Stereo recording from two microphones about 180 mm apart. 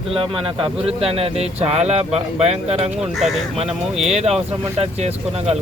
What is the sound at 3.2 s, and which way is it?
Speech, centre (ahead or behind).